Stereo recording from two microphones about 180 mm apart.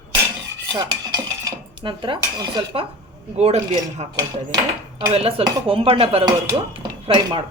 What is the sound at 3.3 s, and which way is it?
A woman's voice, 40° right (ahead or behind).